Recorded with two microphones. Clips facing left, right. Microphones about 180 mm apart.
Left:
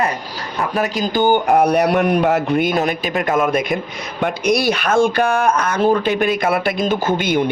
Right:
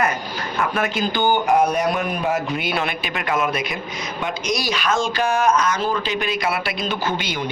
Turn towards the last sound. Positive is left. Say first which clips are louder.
# left 7 dB
turn(degrees=55)  # may be behind; listen again after turning